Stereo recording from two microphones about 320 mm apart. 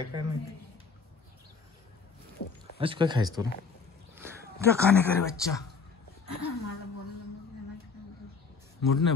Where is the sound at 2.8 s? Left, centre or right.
Centre.